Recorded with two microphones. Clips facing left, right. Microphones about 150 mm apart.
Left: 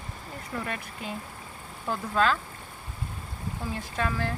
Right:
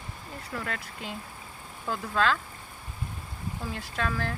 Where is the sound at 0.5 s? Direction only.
20° left (ahead or behind).